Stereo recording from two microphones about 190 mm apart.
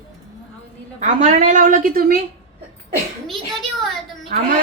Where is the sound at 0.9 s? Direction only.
40° right (ahead or behind).